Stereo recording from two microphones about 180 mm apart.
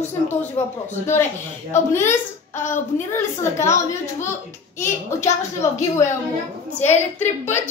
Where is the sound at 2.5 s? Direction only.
45° left (ahead or behind).